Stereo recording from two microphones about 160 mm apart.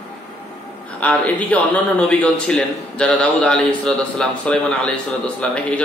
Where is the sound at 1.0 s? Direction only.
10° left (ahead or behind).